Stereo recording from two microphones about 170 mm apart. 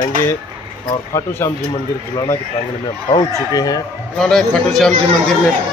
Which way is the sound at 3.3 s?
20° left (ahead or behind).